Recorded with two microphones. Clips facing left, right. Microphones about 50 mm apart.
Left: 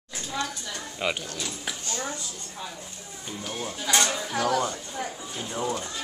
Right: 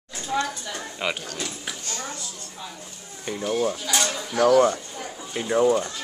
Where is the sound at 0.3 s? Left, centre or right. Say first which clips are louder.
Right 6 dB; centre.